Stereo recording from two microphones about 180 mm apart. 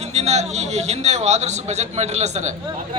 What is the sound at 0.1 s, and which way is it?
A man's voice, 40° right (ahead or behind).